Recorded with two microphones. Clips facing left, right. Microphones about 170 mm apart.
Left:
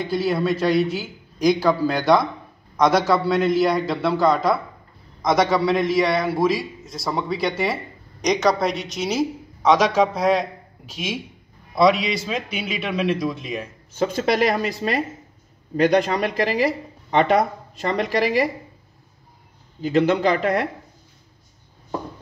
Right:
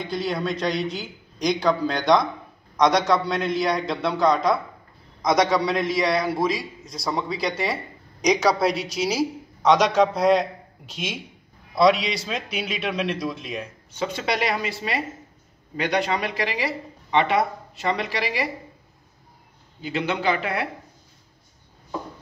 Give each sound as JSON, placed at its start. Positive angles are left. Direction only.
{"t": 0.0, "sound": "a man's voice", "side_deg": 5}
{"t": 13.9, "sound": "speech", "side_deg": 45}
{"t": 19.8, "sound": "speech", "side_deg": 40}